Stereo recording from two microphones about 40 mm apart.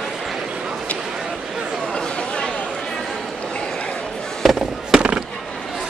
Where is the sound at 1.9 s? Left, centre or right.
Left.